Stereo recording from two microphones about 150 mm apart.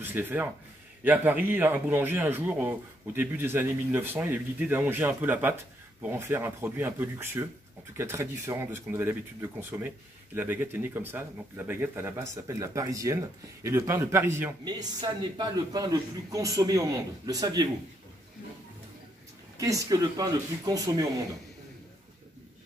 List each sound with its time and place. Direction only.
0.0 s speech: 15° right (ahead or behind)
14.6 s a man's voice: 25° right (ahead or behind)
19.5 s a man's voice: 20° right (ahead or behind)